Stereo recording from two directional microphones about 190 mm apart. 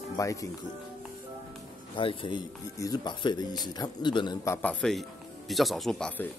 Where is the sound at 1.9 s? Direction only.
25° left (ahead or behind); by 6.3 s centre (ahead or behind).